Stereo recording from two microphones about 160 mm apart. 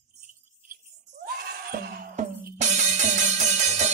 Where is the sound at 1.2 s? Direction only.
70° right (ahead or behind).